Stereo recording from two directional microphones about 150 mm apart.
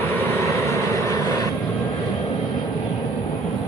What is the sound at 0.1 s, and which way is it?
Vehicle, 15° left (ahead or behind).